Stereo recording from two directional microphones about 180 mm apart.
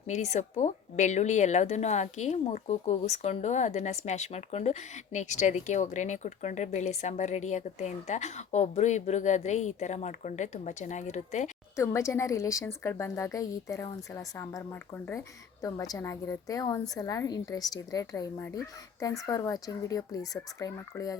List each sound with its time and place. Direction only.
0.1 s speech: 40° left (ahead or behind)
11.8 s a woman's voice: 15° left (ahead or behind)